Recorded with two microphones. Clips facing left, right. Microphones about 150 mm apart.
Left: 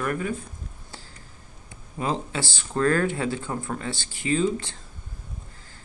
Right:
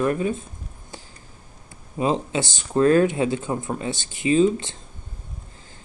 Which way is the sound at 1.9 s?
20° right (ahead or behind).